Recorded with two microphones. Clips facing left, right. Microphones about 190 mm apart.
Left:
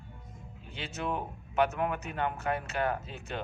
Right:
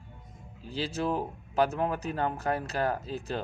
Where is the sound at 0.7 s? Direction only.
35° right (ahead or behind).